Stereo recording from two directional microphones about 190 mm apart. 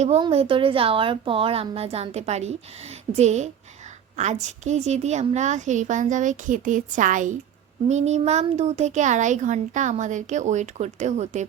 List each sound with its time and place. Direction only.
0.2 s a child's voice: 30° right (ahead or behind)